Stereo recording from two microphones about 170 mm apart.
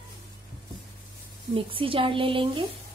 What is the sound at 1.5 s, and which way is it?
A woman's voice, 30° right (ahead or behind).